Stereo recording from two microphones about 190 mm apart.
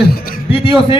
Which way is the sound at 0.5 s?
25° left (ahead or behind).